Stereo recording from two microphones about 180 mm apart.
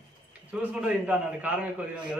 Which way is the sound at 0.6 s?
5° right (ahead or behind).